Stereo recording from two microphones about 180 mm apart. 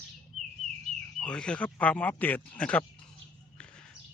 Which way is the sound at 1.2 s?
5° left (ahead or behind).